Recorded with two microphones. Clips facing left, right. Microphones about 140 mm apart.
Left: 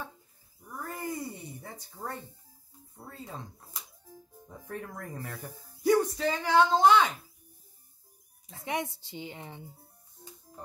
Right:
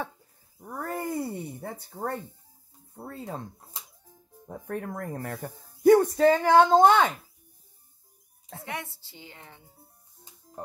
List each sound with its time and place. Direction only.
0.6 s speech: 60° right (ahead or behind)
4.5 s speech: 55° right (ahead or behind)
8.6 s a woman's voice: 20° left (ahead or behind)
10.2 s music: centre (ahead or behind)